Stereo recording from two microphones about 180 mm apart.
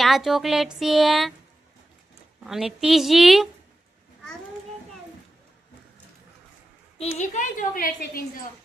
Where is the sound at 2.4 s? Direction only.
Centre (ahead or behind).